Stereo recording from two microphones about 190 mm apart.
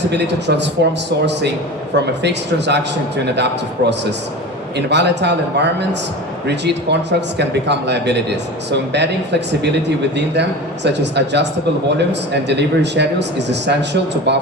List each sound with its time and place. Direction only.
0.1 s speech: 65° right (ahead or behind)
10.8 s speech: 65° right (ahead or behind)